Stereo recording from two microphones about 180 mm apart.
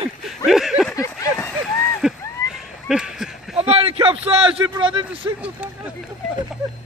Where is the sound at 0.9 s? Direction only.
15° left (ahead or behind).